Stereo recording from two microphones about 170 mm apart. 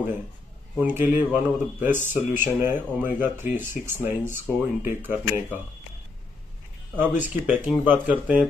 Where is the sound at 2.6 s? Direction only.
10° right (ahead or behind).